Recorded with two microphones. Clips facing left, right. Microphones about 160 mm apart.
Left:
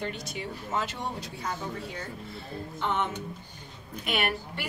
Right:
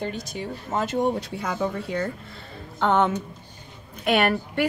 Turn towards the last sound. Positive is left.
turn(degrees=-55)  # may be behind; listen again after turning